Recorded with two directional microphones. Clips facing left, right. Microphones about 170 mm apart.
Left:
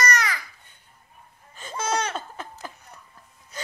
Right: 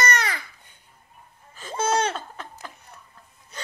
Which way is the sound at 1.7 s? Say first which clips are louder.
Right 4 dB; 25° right (ahead or behind).